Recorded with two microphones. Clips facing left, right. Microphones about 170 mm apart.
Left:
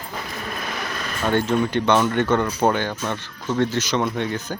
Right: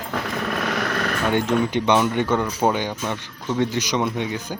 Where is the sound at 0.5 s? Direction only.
70° right (ahead or behind).